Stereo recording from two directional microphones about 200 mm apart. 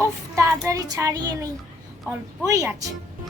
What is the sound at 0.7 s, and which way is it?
Speech, 15° right (ahead or behind).